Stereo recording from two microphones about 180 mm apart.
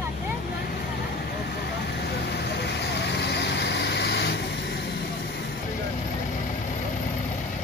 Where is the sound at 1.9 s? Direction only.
70° left (ahead or behind).